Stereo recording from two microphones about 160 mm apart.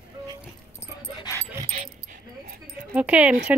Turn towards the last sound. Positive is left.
turn(degrees=-5)  # may be behind; listen again after turning